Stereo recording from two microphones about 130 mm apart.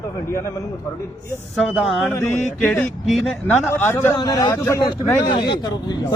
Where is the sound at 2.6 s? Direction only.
10° left (ahead or behind).